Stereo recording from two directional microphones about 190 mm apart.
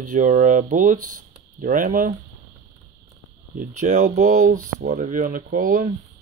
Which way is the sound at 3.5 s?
40° right (ahead or behind).